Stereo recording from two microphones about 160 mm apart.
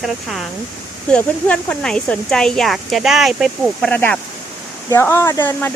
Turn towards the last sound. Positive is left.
turn(degrees=15)  # may be behind; listen again after turning